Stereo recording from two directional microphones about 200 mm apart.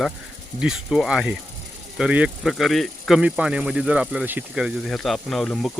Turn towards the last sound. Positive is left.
turn(degrees=0)  # may be behind; listen again after turning